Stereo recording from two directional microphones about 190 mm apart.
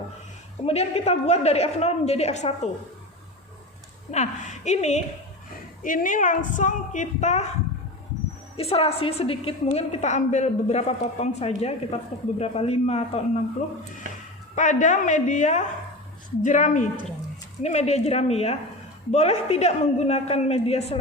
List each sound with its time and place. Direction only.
0.6 s a woman's voice: 35° left (ahead or behind)
4.1 s a woman's voice: 35° left (ahead or behind)
8.5 s a woman's voice: 30° left (ahead or behind)
14.5 s a woman's voice: 40° left (ahead or behind)